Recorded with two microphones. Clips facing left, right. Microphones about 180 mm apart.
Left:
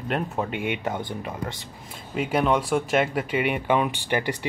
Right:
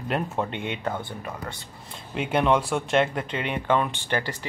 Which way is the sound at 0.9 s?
20° left (ahead or behind).